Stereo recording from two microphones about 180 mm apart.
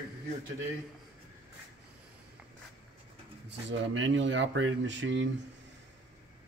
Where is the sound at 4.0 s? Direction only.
90° right.